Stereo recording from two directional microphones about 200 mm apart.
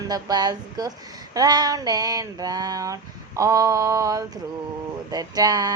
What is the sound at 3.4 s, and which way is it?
Mantra, 15° right (ahead or behind).